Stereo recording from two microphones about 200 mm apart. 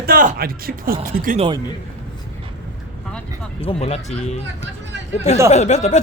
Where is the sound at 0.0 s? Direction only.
45° right (ahead or behind).